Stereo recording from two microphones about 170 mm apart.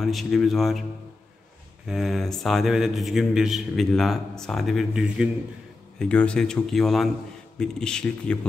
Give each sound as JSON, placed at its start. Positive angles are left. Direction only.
{"t": 0.0, "sound": "a man's voice", "side_deg": 0}
{"t": 1.9, "sound": "a man's voice", "side_deg": 0}
{"t": 5.9, "sound": "a man's voice", "side_deg": 5}